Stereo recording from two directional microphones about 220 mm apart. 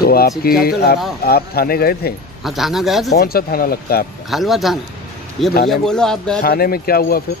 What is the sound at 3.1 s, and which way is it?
Speech, 45° left (ahead or behind).